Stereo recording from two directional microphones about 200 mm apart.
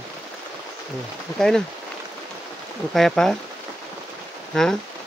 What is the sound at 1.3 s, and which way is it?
Speech, centre (ahead or behind).